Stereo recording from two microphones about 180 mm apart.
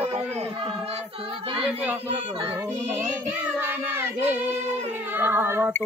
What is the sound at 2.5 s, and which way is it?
Child singing, 15° right (ahead or behind).